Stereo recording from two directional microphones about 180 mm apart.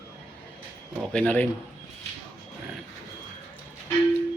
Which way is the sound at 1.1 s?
5° left (ahead or behind).